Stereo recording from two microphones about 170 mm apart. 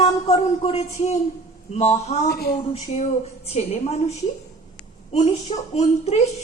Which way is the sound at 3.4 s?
40° left (ahead or behind).